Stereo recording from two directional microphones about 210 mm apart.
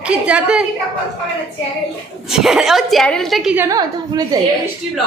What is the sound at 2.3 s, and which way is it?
A woman's voice, centre (ahead or behind).